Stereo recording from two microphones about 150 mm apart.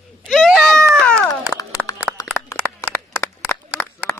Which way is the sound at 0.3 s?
Centre (ahead or behind).